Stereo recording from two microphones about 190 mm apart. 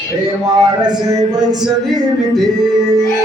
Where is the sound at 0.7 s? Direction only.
20° right (ahead or behind).